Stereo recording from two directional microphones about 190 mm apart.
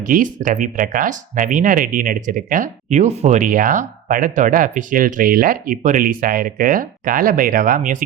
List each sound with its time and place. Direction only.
0.0 s speech: 45° right (ahead or behind)